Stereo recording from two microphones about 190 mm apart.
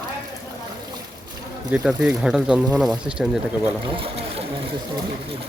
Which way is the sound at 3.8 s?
30° right (ahead or behind).